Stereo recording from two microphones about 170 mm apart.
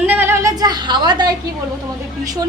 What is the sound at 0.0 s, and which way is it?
Music, 10° right (ahead or behind).